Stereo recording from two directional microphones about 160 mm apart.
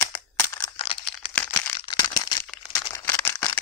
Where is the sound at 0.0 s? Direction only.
15° left (ahead or behind).